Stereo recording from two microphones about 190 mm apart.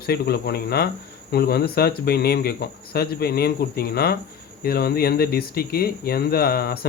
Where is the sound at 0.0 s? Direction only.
55° left (ahead or behind).